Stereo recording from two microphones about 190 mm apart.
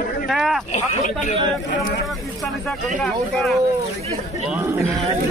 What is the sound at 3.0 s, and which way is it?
Speech, centre (ahead or behind).